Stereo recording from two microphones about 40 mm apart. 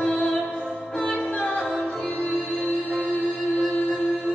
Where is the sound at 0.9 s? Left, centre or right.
Centre.